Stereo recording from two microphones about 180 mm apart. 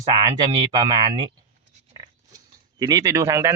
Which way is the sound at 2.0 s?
20° right (ahead or behind).